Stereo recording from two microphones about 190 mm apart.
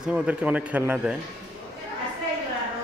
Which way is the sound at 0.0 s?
5° right (ahead or behind).